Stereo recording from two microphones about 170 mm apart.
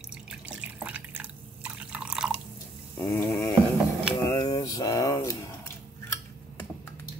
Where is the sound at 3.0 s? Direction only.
15° left (ahead or behind).